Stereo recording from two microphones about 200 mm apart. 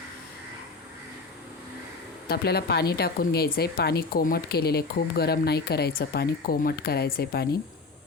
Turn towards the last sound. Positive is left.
turn(degrees=50)  # may be behind; listen again after turning